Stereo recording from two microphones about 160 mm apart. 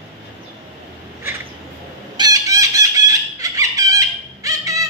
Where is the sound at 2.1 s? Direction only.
25° right (ahead or behind).